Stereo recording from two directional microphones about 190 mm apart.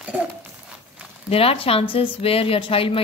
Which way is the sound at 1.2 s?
30° left (ahead or behind).